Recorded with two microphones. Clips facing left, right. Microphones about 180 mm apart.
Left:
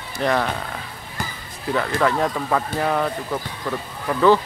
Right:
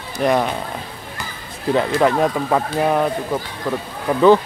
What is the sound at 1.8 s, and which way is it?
Speech, 20° right (ahead or behind).